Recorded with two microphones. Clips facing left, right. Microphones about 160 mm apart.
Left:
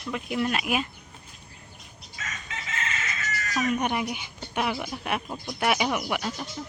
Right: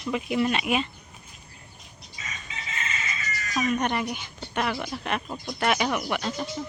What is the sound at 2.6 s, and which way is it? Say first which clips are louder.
Chicken: left 1 dB; 70° left (ahead or behind).